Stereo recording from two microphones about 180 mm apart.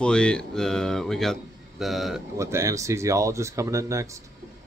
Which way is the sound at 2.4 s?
15° right (ahead or behind).